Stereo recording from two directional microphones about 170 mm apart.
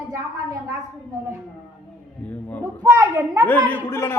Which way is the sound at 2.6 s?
15° right (ahead or behind).